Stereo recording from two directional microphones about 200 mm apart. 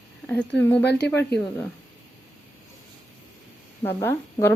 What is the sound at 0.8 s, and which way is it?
Speech, 55° left (ahead or behind).